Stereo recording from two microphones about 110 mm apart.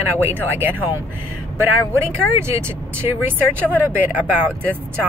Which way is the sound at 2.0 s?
20° right (ahead or behind).